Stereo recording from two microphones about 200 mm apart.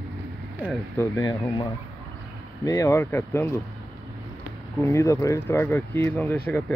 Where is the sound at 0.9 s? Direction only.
15° left (ahead or behind).